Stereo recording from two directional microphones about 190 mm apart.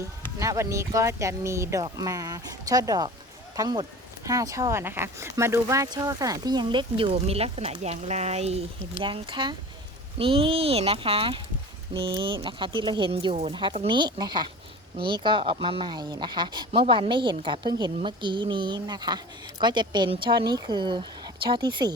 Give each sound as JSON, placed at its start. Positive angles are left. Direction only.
{"t": 0.3, "sound": "speech", "side_deg": -15}